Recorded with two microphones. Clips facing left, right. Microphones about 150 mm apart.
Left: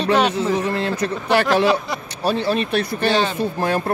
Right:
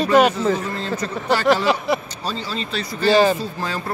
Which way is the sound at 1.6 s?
Centre (ahead or behind).